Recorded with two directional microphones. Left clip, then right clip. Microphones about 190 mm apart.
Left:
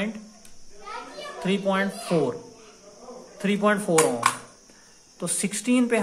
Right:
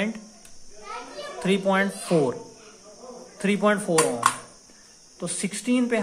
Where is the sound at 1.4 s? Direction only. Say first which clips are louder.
Right 2 dB; 10° right (ahead or behind).